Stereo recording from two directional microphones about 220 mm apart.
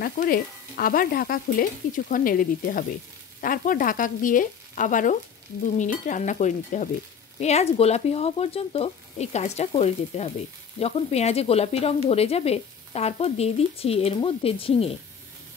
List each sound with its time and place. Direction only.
0.0 s speech: 40° left (ahead or behind); by 15.0 s 25° left (ahead or behind)